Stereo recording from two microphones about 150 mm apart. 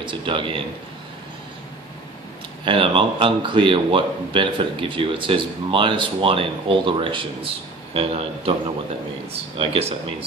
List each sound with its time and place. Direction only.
0.0 s speech: 35° right (ahead or behind)
2.6 s speech: 35° right (ahead or behind)